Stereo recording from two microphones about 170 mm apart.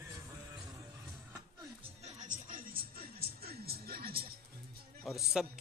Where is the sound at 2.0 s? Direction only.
45° right (ahead or behind); by 4.2 s 65° right (ahead or behind).